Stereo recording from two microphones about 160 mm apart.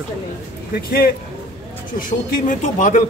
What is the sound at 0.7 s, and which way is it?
Speech, 70° left (ahead or behind).